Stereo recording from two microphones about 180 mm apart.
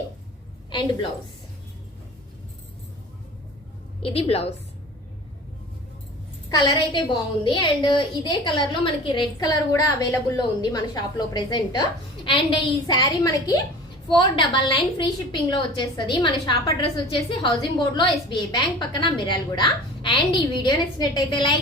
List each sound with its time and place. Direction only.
4.0 s a woman's voice: 35° left (ahead or behind)
6.5 s a woman's voice: 25° left (ahead or behind)